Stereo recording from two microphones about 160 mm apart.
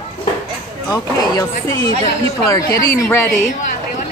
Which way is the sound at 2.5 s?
20° left (ahead or behind).